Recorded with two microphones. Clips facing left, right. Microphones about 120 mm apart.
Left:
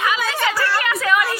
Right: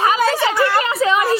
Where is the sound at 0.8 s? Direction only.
25° right (ahead or behind).